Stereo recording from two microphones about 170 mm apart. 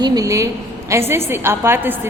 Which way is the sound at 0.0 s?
20° right (ahead or behind).